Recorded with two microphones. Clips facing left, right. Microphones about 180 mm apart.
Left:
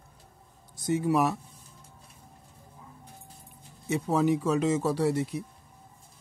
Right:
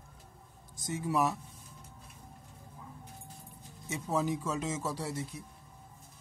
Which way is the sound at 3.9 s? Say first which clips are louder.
Left 7 dB; 65° left (ahead or behind).